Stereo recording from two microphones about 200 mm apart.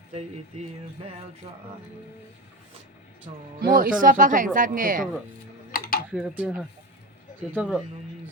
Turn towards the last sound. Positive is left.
turn(degrees=0)  # may be behind; listen again after turning